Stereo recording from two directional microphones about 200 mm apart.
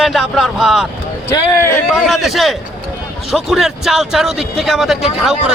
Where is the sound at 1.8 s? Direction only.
Centre (ahead or behind).